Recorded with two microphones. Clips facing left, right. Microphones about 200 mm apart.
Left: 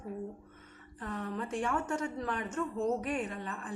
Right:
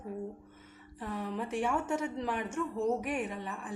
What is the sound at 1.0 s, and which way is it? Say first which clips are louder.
A woman's voice: right 1 dB; 10° right (ahead or behind).